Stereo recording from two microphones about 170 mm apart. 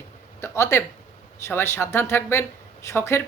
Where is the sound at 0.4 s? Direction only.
15° left (ahead or behind).